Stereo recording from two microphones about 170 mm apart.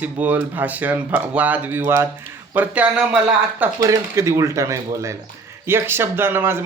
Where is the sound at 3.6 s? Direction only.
20° right (ahead or behind).